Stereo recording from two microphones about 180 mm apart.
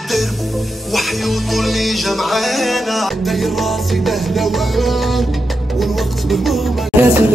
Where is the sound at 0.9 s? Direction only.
Centre (ahead or behind).